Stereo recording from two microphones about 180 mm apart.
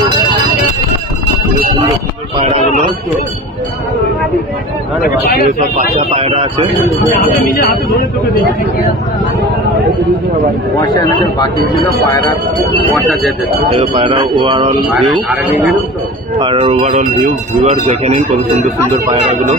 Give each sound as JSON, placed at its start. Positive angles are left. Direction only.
{"t": 2.3, "sound": "a sound", "side_deg": -35}
{"t": 5.0, "sound": "a man's voice", "side_deg": 60}
{"t": 5.6, "sound": "speech", "side_deg": -40}
{"t": 10.9, "sound": "speech", "side_deg": 20}
{"t": 13.7, "sound": "speech", "side_deg": -30}
{"t": 14.9, "sound": "speech", "side_deg": 0}
{"t": 16.3, "sound": "speech", "side_deg": -30}